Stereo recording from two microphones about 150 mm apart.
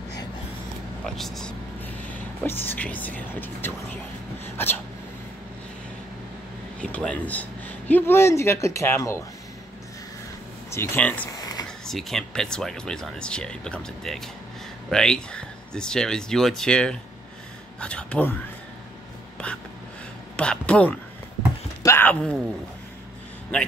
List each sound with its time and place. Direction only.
1.0 s speech: centre (ahead or behind)
6.8 s a man's voice: 5° left (ahead or behind)
10.7 s a man's voice: 15° left (ahead or behind)
11.2 s a sound: 25° left (ahead or behind)
11.8 s a man's voice: centre (ahead or behind)
20.3 s a man's voice: 10° left (ahead or behind)
21.8 s a sound: 15° left (ahead or behind)